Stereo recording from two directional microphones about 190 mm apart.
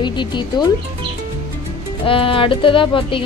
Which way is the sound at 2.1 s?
30° left (ahead or behind).